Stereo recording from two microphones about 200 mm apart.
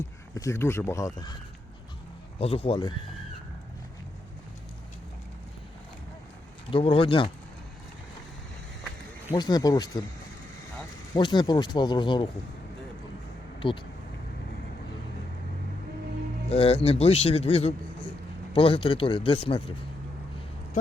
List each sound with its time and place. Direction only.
0.3 s speech: 15° left (ahead or behind)
2.4 s speech: 30° left (ahead or behind)
6.7 s speech: 25° left (ahead or behind)
9.3 s speech: 20° left (ahead or behind)
11.1 s speech: 20° left (ahead or behind)
13.6 s speech: 25° left (ahead or behind)
16.5 s speech: 30° left (ahead or behind)